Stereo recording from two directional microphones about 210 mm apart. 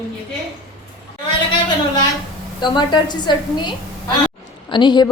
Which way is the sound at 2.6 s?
20° left (ahead or behind).